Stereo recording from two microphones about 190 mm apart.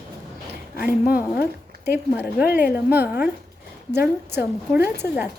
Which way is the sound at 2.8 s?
10° right (ahead or behind).